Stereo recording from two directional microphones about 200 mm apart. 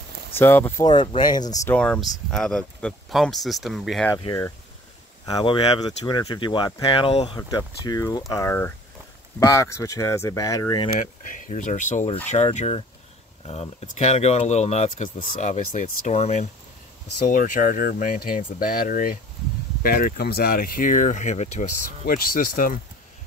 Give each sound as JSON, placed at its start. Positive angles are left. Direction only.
{"t": 0.4, "sound": "speech", "side_deg": 10}
{"t": 0.8, "sound": "speech", "side_deg": 25}
{"t": 1.7, "sound": "speech", "side_deg": 5}
{"t": 4.2, "sound": "speech", "side_deg": 20}
{"t": 11.0, "sound": "speech", "side_deg": 40}